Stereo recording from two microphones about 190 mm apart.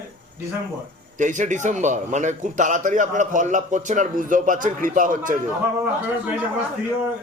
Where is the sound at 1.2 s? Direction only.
40° right (ahead or behind).